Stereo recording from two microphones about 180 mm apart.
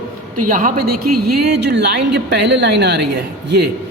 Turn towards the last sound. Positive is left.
turn(degrees=-70)  # may be behind; listen again after turning